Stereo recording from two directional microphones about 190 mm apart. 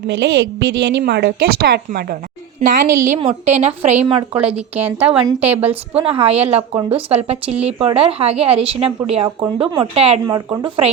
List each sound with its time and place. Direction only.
0.1 s a woman's voice: 65° right (ahead or behind)
2.6 s a woman's voice: 40° right (ahead or behind)
4.4 s a woman's voice: 5° right (ahead or behind)
5.9 s a woman's voice: 30° right (ahead or behind)
10.2 s speech: 20° right (ahead or behind)